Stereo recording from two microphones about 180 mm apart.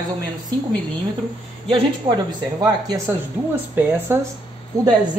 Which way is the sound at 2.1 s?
25° right (ahead or behind).